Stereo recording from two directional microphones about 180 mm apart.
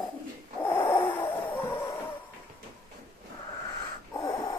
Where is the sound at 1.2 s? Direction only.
15° left (ahead or behind).